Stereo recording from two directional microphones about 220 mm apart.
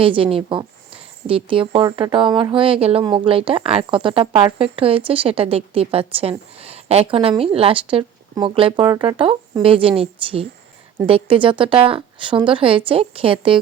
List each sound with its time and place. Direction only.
0.0 s speech: 25° right (ahead or behind)